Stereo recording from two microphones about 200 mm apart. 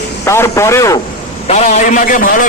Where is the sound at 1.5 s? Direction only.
35° left (ahead or behind).